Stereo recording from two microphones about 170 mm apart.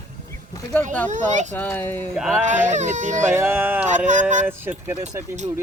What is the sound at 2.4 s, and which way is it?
Speech, 45° right (ahead or behind).